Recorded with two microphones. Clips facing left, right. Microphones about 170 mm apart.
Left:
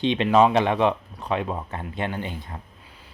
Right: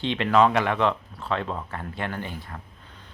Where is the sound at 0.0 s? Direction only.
20° left (ahead or behind).